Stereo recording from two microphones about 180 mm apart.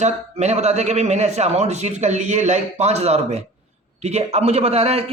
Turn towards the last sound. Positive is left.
turn(degrees=-35)  # may be behind; listen again after turning